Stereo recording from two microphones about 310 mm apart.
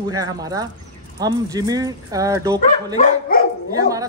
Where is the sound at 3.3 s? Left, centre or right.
Left.